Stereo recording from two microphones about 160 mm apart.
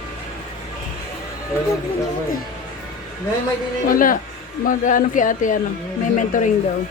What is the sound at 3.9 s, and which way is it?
A woman's voice, 60° left (ahead or behind).